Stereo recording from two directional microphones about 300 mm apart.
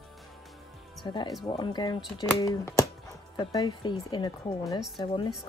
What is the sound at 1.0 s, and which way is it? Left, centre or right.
Speech, centre.